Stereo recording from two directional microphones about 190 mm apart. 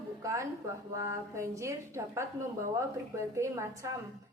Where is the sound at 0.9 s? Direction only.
15° right (ahead or behind).